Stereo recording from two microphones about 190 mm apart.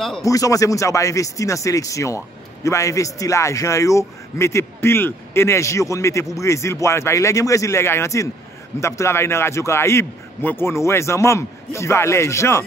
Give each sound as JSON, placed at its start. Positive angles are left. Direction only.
{"t": 0.2, "sound": "speech", "side_deg": 15}